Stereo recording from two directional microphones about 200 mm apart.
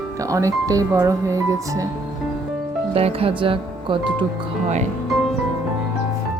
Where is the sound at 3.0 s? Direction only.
30° right (ahead or behind).